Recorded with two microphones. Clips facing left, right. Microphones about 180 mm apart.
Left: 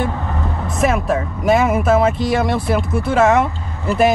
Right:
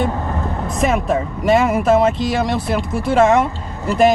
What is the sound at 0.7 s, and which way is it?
Speech, 5° left (ahead or behind).